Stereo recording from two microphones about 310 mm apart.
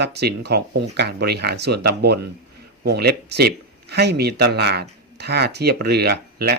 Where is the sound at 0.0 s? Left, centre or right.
Right.